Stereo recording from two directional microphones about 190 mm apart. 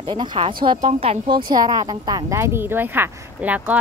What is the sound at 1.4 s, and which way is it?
Speech, 20° right (ahead or behind).